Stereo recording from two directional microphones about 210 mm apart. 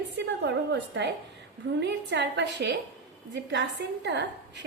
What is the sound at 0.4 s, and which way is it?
A woman's voice, 55° right (ahead or behind).